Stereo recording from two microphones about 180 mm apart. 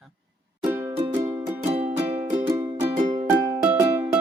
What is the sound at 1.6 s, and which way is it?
Music, 35° right (ahead or behind).